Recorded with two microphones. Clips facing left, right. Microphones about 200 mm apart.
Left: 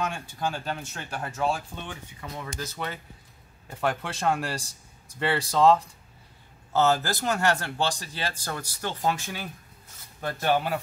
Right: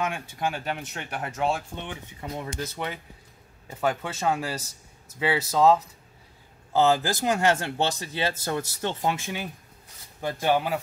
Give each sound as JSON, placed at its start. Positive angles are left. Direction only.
{"t": 0.4, "sound": "speech", "side_deg": -15}
{"t": 3.7, "sound": "speech", "side_deg": -5}